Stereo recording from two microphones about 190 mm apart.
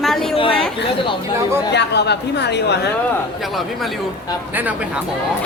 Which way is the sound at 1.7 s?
60° left (ahead or behind).